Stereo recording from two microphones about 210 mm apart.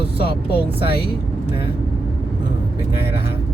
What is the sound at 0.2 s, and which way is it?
Vehicle, 50° left (ahead or behind).